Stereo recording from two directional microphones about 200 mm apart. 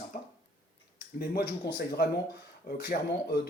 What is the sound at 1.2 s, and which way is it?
Speech, 50° left (ahead or behind).